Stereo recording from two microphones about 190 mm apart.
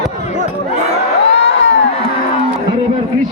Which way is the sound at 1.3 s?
65° left (ahead or behind).